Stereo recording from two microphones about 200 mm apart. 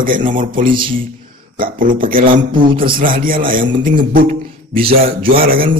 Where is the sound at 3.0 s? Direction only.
45° right (ahead or behind).